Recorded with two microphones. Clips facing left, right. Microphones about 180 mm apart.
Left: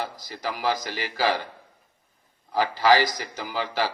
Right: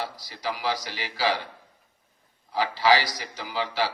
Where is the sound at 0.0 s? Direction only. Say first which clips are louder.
Left 1 dB; 50° left (ahead or behind).